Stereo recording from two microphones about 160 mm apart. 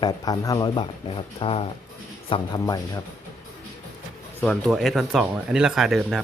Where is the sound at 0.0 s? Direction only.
25° left (ahead or behind).